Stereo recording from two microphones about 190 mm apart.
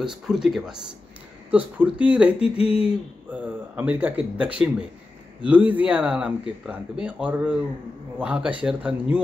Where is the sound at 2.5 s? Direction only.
30° left (ahead or behind).